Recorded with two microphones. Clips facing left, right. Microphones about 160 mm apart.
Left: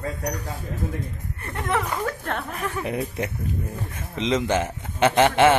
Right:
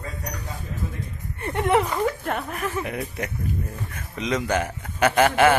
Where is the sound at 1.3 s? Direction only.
30° right (ahead or behind).